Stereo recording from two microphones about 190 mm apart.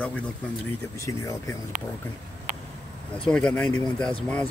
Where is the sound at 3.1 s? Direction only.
5° left (ahead or behind).